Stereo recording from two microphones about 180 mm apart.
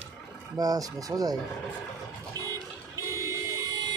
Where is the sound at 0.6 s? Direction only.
20° right (ahead or behind).